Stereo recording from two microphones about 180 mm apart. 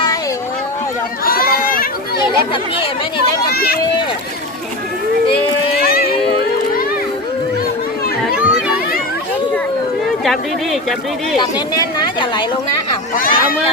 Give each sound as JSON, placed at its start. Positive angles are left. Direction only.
{"t": 1.2, "sound": "run", "side_deg": 55}
{"t": 3.4, "sound": "speech", "side_deg": 60}
{"t": 5.8, "sound": "a sound", "side_deg": 55}
{"t": 8.2, "sound": "children playing", "side_deg": -5}
{"t": 10.2, "sound": "speech", "side_deg": 0}
{"t": 11.8, "sound": "a woman's voice", "side_deg": 25}
{"t": 13.1, "sound": "speech", "side_deg": 50}